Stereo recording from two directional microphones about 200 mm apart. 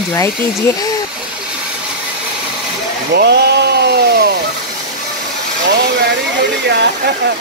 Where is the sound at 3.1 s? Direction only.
55° right (ahead or behind).